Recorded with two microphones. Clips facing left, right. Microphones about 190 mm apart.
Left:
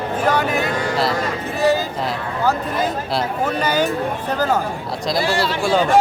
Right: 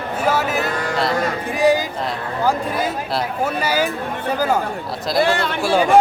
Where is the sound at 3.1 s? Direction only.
10° right (ahead or behind).